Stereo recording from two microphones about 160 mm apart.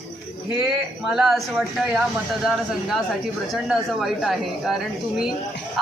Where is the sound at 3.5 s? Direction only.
Centre (ahead or behind).